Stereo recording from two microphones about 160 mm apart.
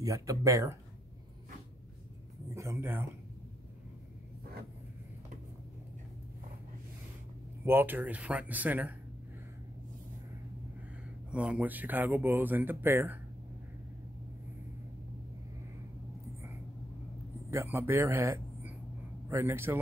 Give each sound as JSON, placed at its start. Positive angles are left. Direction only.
{"t": 0.0, "sound": "speech", "side_deg": -20}
{"t": 2.5, "sound": "speech", "side_deg": -20}
{"t": 7.6, "sound": "speech", "side_deg": -10}
{"t": 11.3, "sound": "speech", "side_deg": -5}
{"t": 17.5, "sound": "a man's voice", "side_deg": -15}